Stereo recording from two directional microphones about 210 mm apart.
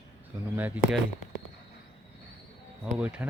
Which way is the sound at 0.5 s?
10° right (ahead or behind).